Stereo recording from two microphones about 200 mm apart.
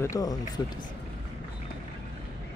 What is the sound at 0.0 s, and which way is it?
Speech, 15° left (ahead or behind).